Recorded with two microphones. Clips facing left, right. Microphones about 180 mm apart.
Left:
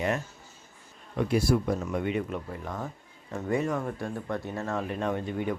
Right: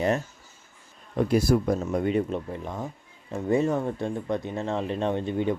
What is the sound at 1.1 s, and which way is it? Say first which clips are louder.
Speech: right 3 dB; 35° right (ahead or behind).